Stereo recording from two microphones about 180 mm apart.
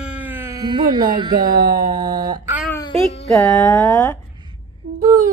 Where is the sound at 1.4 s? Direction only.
60° right (ahead or behind).